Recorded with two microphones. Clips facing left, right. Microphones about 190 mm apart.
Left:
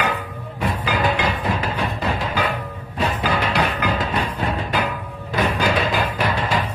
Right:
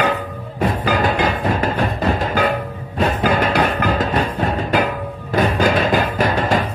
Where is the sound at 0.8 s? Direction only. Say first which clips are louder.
Right 2 dB; 45° right (ahead or behind).